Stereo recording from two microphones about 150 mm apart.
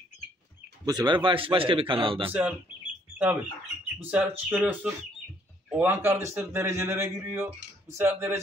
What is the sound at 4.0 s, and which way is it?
A man's voice, 10° right (ahead or behind).